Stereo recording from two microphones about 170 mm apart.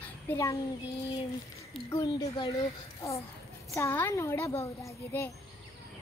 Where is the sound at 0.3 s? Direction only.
20° left (ahead or behind).